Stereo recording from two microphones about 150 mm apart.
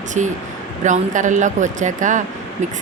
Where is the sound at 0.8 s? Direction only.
55° right (ahead or behind).